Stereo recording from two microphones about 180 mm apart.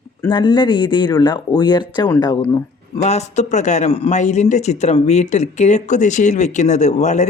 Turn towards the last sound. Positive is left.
turn(degrees=40)  # may be behind; listen again after turning